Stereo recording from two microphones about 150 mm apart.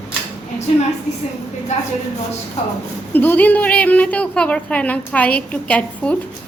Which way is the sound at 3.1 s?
10° left (ahead or behind).